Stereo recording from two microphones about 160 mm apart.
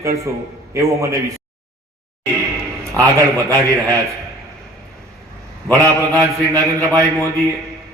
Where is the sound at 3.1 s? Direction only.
20° right (ahead or behind).